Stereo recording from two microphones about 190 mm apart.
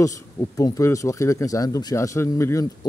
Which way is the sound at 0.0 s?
15° left (ahead or behind).